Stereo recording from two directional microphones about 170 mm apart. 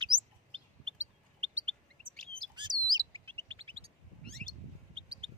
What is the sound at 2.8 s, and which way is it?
Chirp, 25° right (ahead or behind).